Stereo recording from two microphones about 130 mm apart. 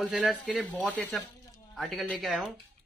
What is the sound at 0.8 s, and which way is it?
Speech, 10° left (ahead or behind).